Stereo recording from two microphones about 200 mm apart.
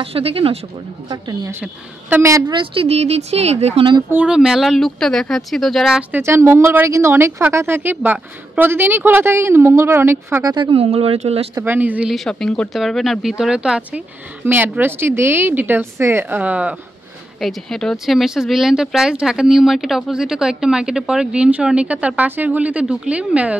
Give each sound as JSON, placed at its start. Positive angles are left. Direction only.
{"t": 0.0, "sound": "a woman's voice", "side_deg": -30}
{"t": 1.6, "sound": "a woman's voice", "side_deg": -10}
{"t": 4.1, "sound": "speech", "side_deg": -5}
{"t": 11.5, "sound": "speech", "side_deg": -10}